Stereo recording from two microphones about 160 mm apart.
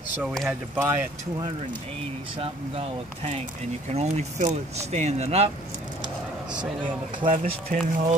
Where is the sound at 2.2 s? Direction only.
35° right (ahead or behind).